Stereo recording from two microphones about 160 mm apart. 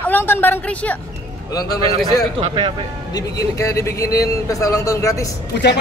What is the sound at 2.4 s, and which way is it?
Speech, 30° right (ahead or behind).